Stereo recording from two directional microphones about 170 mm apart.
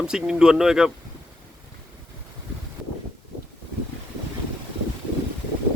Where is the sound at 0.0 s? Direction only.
5° right (ahead or behind).